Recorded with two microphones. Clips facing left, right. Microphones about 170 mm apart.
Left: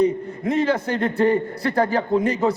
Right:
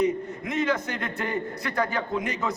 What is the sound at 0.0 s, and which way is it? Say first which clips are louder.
A man's voice: left 5 dB; 30° left (ahead or behind).